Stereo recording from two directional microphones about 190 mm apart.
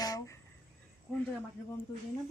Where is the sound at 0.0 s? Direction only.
20° left (ahead or behind).